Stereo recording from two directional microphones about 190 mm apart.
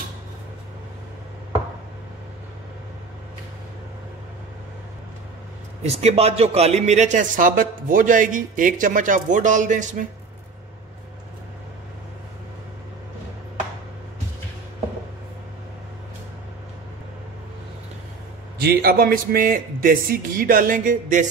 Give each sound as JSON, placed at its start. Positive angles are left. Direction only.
{"t": 5.9, "sound": "speech", "side_deg": -35}
{"t": 18.6, "sound": "a man's voice", "side_deg": -55}